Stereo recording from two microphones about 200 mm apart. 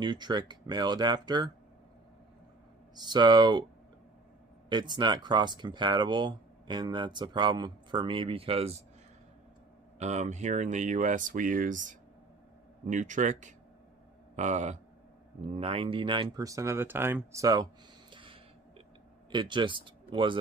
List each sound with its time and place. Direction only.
0.0 s speech: 20° right (ahead or behind)
3.0 s speech: 20° right (ahead or behind)
4.6 s speech: 20° right (ahead or behind)
9.9 s speech: 35° right (ahead or behind); by 17.6 s 15° right (ahead or behind)
18.1 s music: 25° right (ahead or behind)
19.3 s speech: 25° right (ahead or behind)